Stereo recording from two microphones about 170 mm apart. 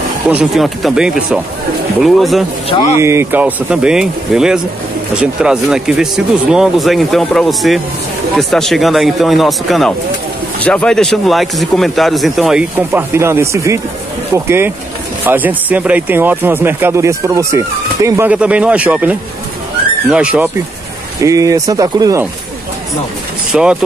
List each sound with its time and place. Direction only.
0.3 s speech: 5° right (ahead or behind)
3.0 s speech: 15° right (ahead or behind)
21.2 s speech: 20° right (ahead or behind)
23.5 s speech: 5° right (ahead or behind)